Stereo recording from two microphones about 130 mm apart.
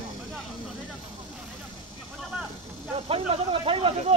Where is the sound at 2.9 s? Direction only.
50° right (ahead or behind).